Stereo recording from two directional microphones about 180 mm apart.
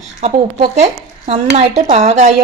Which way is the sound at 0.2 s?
35° right (ahead or behind).